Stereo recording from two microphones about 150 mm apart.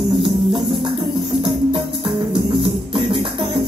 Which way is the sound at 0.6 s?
35° right (ahead or behind).